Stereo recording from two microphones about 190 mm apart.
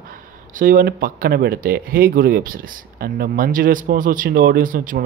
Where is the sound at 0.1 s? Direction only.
45° right (ahead or behind).